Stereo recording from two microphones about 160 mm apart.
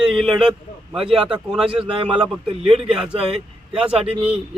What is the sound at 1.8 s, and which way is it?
Speech, 35° right (ahead or behind).